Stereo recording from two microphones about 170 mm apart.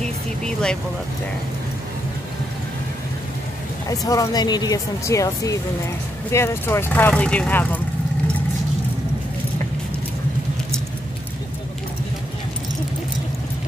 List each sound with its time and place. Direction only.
0.0 s vehicle: 5° left (ahead or behind)
4.0 s speech: 20° left (ahead or behind)